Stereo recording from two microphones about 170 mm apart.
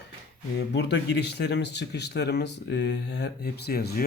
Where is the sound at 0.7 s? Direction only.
90° left; by 4.0 s 70° left (ahead or behind).